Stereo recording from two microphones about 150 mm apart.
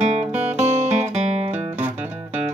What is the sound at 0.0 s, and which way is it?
Music, 45° right (ahead or behind).